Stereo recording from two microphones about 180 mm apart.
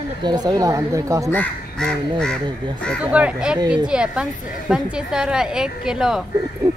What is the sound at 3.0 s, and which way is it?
A woman's voice, 5° right (ahead or behind).